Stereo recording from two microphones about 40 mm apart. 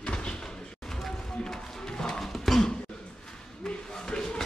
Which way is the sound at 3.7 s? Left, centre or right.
Centre.